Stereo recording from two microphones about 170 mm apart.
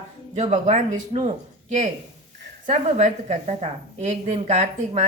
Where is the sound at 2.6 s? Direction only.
45° right (ahead or behind).